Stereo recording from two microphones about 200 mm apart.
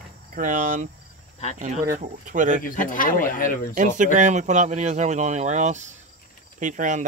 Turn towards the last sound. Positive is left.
turn(degrees=-40)  # may be behind; listen again after turning